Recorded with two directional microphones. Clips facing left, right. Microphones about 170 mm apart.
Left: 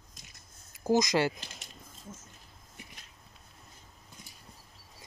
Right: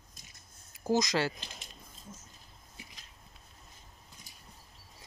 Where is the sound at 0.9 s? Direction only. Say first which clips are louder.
Left 3 dB; 15° left (ahead or behind).